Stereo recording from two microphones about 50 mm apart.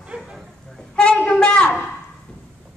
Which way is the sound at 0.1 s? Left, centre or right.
Right.